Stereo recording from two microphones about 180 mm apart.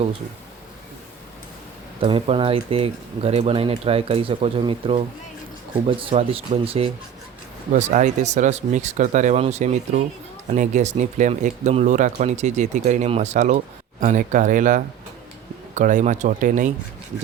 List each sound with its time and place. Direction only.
2.0 s speech: 30° right (ahead or behind); by 16.7 s 45° right (ahead or behind)